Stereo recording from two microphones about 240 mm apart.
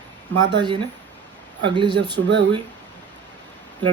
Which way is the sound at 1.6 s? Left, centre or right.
Centre.